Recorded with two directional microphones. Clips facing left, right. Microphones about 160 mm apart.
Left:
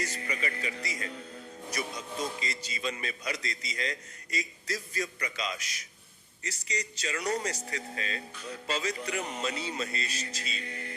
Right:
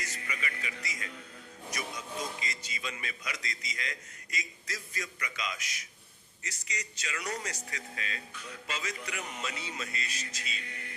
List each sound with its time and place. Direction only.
0.0 s speech: 35° left (ahead or behind)
2.4 s a man's voice: 35° left (ahead or behind)